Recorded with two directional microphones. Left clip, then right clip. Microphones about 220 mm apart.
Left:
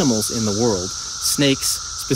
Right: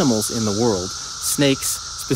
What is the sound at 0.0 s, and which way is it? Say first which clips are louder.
Speech: even; 10° right (ahead or behind).